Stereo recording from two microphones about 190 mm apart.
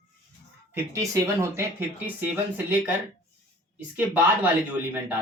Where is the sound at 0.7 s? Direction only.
15° right (ahead or behind).